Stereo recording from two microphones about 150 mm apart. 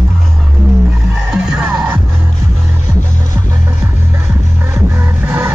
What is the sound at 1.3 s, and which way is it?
Music, 15° right (ahead or behind).